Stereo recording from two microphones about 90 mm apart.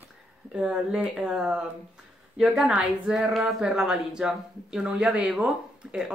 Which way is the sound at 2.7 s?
15° right (ahead or behind).